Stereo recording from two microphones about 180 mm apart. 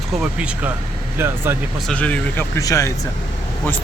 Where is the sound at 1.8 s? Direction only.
5° left (ahead or behind).